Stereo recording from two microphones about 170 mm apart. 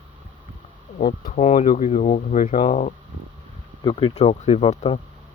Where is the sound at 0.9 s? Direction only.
55° left (ahead or behind).